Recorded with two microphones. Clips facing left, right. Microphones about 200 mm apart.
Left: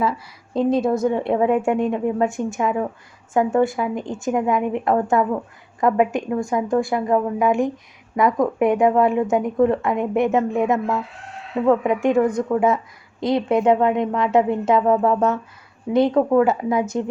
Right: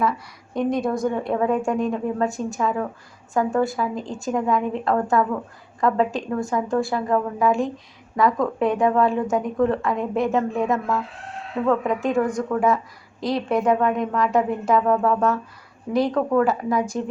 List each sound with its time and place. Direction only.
0.0 s a woman's voice: 25° left (ahead or behind)